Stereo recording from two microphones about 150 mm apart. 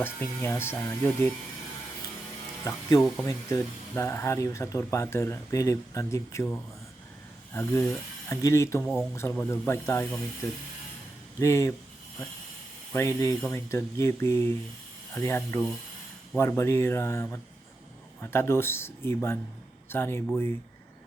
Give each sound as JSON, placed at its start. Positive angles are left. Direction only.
{"t": 0.0, "sound": "speech", "side_deg": 15}
{"t": 2.7, "sound": "speech", "side_deg": 20}
{"t": 11.3, "sound": "speech", "side_deg": 20}
{"t": 12.9, "sound": "speech", "side_deg": 20}